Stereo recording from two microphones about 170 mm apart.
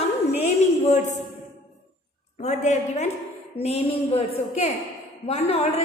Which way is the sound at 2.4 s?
45° left (ahead or behind).